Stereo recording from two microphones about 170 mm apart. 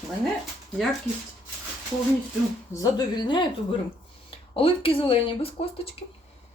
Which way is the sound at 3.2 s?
25° left (ahead or behind).